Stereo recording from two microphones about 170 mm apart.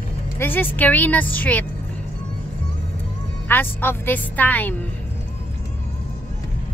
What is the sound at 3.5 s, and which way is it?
A woman's voice, 10° left (ahead or behind).